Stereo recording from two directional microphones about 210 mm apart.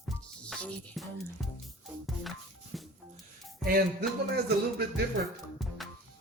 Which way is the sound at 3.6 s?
45° right (ahead or behind).